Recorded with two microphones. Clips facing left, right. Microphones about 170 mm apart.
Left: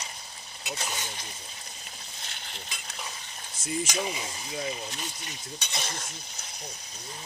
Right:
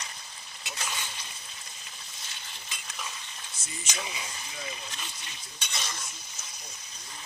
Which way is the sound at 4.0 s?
35° left (ahead or behind).